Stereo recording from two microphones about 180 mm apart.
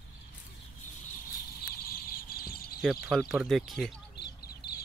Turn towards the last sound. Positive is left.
turn(degrees=65)  # may be behind; listen again after turning